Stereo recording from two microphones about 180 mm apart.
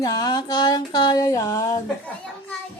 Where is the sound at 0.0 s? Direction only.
20° left (ahead or behind).